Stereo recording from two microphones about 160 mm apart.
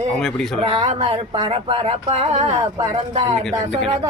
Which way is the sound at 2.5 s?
25° right (ahead or behind).